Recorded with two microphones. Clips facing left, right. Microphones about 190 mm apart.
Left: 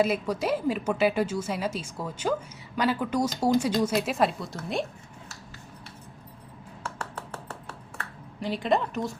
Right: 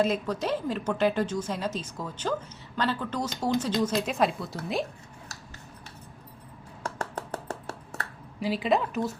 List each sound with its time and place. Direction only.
0.0 s a woman's voice: 10° left (ahead or behind)
6.8 s finger snapping: 35° right (ahead or behind)
8.4 s speech: 5° right (ahead or behind)